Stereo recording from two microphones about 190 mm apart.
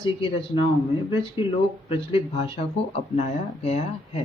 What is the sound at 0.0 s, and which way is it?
Speech, 25° left (ahead or behind).